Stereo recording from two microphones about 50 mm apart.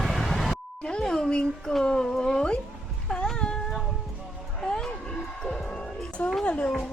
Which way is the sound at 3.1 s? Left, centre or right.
Centre.